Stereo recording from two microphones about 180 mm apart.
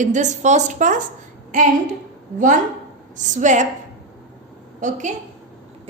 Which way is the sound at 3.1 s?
45° right (ahead or behind).